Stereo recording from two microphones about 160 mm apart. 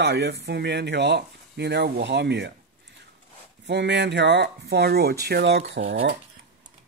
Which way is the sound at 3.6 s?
90° right.